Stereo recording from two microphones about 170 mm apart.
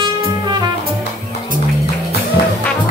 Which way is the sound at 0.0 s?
25° right (ahead or behind).